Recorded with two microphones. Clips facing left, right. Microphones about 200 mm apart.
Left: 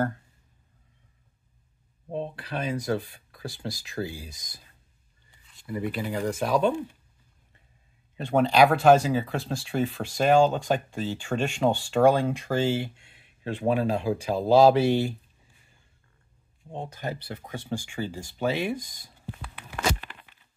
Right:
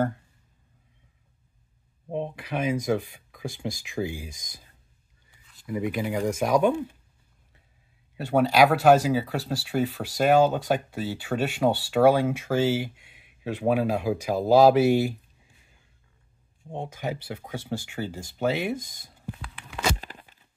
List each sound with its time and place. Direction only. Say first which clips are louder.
2.0 s speech: right 2 dB; 15° right (ahead or behind)
8.2 s speech: even; 5° right (ahead or behind)
16.6 s speech: right 2 dB; 15° right (ahead or behind)
20.0 s tearing: right 3 dB; 40° right (ahead or behind)